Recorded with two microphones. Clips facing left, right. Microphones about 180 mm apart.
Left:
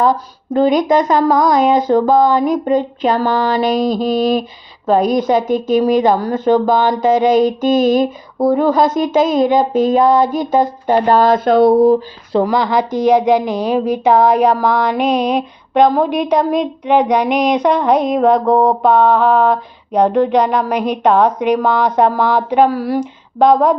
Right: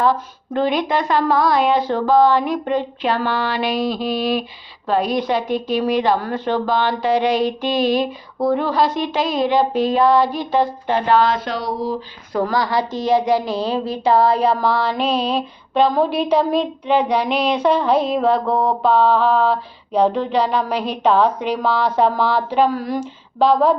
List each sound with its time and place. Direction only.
0.0 s speech: 40° left (ahead or behind)
12.3 s speech: 20° left (ahead or behind)
16.8 s female singing: 65° left (ahead or behind)
17.1 s speech: 15° left (ahead or behind)
19.9 s speech: 15° left (ahead or behind)